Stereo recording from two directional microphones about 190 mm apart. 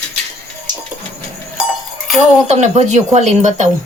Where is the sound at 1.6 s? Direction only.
5° right (ahead or behind).